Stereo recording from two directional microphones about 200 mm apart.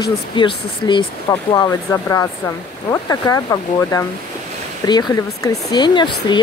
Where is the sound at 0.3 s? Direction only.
25° left (ahead or behind).